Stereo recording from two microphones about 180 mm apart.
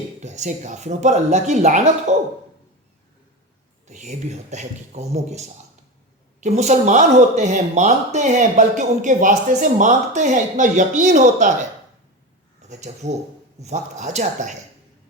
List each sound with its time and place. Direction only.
0.2 s speech: 40° right (ahead or behind)
3.8 s speech: 40° right (ahead or behind)
12.6 s speech: 40° right (ahead or behind)